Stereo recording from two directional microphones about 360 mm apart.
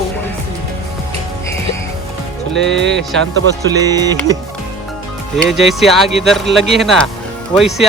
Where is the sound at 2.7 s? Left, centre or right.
Right.